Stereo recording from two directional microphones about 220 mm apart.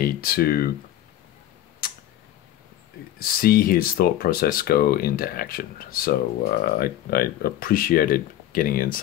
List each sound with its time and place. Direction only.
0.0 s speech: 45° left (ahead or behind)
1.8 s tick-tock: 40° left (ahead or behind)
3.2 s speech: 45° left (ahead or behind)